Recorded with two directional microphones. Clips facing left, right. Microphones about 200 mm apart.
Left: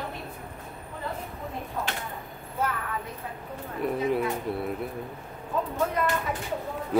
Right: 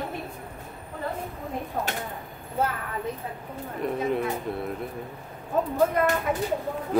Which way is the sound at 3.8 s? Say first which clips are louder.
Even; 5° left (ahead or behind).